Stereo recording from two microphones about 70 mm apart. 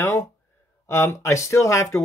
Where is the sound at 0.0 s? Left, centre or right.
Left.